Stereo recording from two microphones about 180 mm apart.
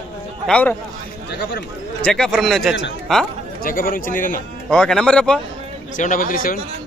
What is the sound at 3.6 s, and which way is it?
Speech, 50° left (ahead or behind).